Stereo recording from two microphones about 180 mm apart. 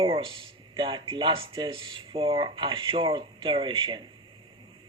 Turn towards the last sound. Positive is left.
turn(degrees=-30)  # may be behind; listen again after turning